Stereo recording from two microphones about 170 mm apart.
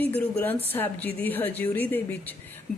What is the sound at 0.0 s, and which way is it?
Speech, 10° left (ahead or behind).